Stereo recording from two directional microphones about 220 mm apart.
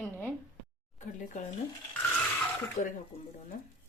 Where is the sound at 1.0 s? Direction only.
35° left (ahead or behind).